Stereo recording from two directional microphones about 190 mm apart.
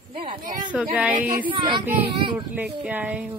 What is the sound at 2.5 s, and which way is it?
Speech, 10° right (ahead or behind).